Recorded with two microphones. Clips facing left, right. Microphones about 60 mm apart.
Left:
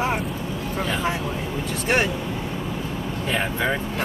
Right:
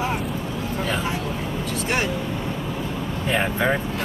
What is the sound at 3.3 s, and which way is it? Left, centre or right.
Speech, centre.